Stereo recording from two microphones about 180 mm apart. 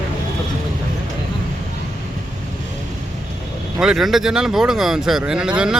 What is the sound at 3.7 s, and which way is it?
Speech, 5° right (ahead or behind).